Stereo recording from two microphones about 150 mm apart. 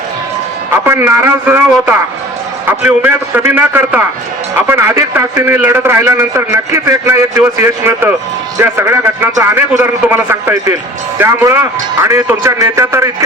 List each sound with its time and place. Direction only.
0.7 s a man's voice: 15° right (ahead or behind)